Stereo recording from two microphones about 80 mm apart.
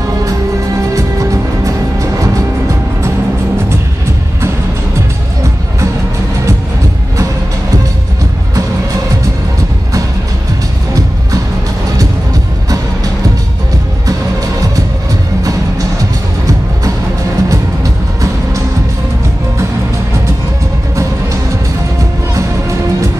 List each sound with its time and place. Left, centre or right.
0.9 s music: right
17.5 s music: right